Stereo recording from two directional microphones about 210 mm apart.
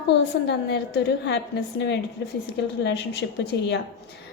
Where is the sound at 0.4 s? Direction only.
55° left (ahead or behind).